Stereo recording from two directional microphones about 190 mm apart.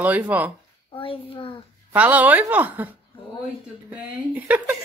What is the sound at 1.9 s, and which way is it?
Speech, 10° right (ahead or behind).